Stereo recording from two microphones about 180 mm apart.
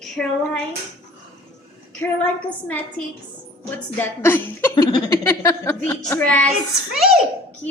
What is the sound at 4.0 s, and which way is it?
Speech, 10° left (ahead or behind).